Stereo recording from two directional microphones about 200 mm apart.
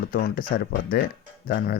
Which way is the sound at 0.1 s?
45° left (ahead or behind).